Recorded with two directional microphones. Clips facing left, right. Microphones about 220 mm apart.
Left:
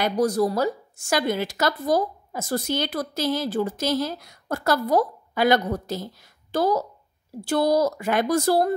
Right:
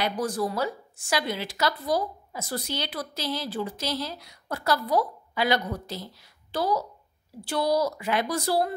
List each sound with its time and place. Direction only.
0.0 s a woman's voice: 40° left (ahead or behind)